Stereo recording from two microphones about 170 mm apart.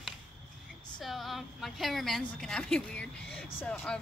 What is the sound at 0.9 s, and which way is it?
A woman's voice, centre (ahead or behind).